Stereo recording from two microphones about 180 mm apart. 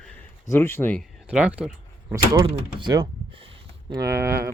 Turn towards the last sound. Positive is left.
turn(degrees=-15)  # may be behind; listen again after turning